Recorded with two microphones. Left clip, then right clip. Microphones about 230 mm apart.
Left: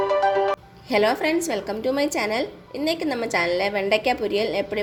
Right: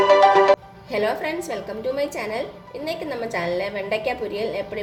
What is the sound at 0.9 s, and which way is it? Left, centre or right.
A woman's voice, left.